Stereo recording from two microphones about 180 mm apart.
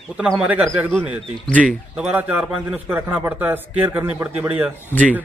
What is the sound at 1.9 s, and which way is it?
A man's voice, 10° right (ahead or behind).